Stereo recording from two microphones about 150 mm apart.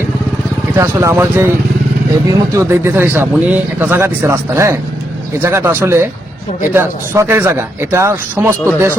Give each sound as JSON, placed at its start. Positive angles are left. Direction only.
{"t": 0.8, "sound": "speech", "side_deg": -20}
{"t": 2.6, "sound": "speech", "side_deg": -15}